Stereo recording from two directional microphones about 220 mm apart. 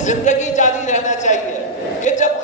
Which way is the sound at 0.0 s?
35° left (ahead or behind).